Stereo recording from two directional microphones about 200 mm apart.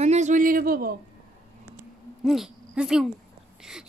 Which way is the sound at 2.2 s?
Centre (ahead or behind).